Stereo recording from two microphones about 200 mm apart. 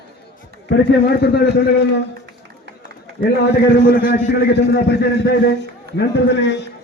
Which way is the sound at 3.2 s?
55° left (ahead or behind).